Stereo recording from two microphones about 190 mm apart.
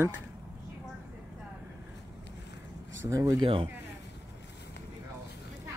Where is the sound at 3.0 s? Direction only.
15° right (ahead or behind).